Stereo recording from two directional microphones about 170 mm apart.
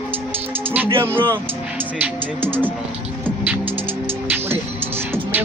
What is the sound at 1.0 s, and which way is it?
Speech, 15° right (ahead or behind).